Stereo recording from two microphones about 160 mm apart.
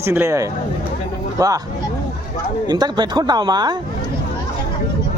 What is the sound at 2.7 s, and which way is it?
Speech, 25° right (ahead or behind).